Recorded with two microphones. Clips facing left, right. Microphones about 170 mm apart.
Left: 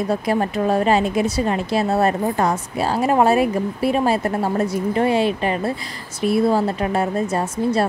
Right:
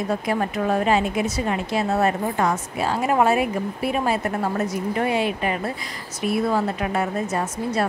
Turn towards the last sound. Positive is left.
turn(degrees=30)  # may be behind; listen again after turning